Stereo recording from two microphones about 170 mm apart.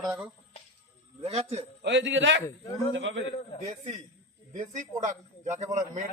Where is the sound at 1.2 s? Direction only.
40° right (ahead or behind).